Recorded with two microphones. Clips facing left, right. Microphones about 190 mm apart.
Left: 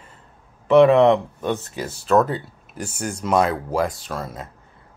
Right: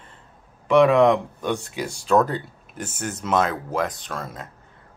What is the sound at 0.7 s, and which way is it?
Speech, 5° left (ahead or behind).